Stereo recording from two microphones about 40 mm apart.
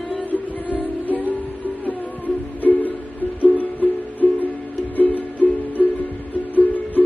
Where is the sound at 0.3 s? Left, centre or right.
Left.